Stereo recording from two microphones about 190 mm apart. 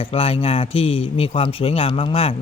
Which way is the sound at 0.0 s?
30° left (ahead or behind).